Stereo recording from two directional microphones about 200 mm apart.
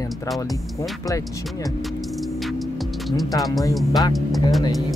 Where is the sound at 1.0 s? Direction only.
15° left (ahead or behind).